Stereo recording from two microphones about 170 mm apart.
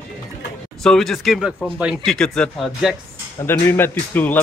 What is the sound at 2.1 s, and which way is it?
Speech, 5° left (ahead or behind).